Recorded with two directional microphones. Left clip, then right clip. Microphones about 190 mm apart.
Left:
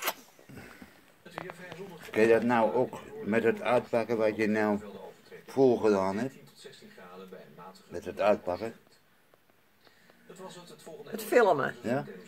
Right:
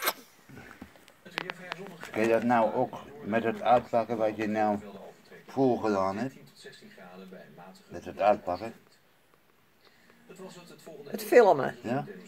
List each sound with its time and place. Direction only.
0.8 s rowboat: 45° right (ahead or behind)
2.1 s a man's voice: 30° left (ahead or behind)
7.9 s a man's voice: 35° left (ahead or behind)
11.1 s speech: 10° right (ahead or behind)
11.8 s a man's voice: 35° left (ahead or behind)